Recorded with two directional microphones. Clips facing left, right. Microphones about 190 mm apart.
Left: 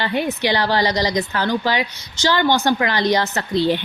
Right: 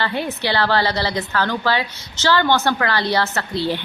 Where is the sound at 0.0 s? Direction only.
15° left (ahead or behind).